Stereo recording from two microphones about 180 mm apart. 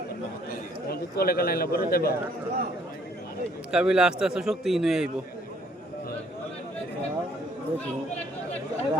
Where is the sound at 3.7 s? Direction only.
5° right (ahead or behind).